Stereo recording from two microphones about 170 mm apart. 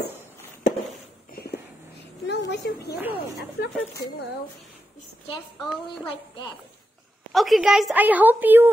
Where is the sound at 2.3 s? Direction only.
90° left.